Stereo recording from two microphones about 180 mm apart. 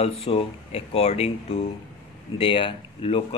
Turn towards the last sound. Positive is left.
turn(degrees=30)  # may be behind; listen again after turning